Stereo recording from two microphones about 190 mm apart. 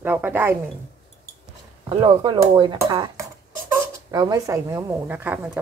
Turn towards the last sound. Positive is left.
turn(degrees=-10)  # may be behind; listen again after turning